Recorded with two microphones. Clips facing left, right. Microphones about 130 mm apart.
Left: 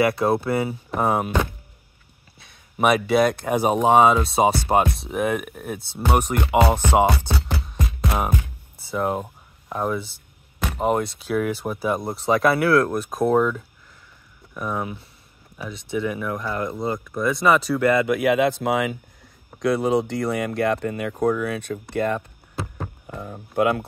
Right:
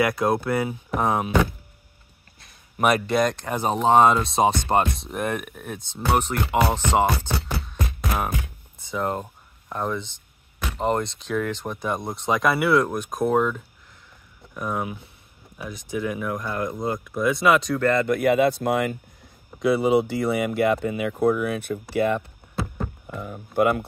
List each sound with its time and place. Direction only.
0.0 s speech: 5° left (ahead or behind)
2.4 s speech: centre (ahead or behind)
23.2 s speech: centre (ahead or behind)